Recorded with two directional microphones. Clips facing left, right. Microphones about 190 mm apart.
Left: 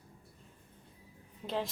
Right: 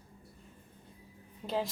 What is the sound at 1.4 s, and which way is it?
Speech, centre (ahead or behind).